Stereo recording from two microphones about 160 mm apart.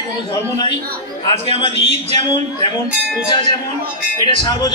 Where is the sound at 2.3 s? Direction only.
35° left (ahead or behind).